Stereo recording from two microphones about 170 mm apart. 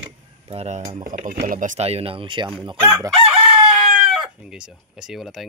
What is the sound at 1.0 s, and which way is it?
Speech, 50° right (ahead or behind).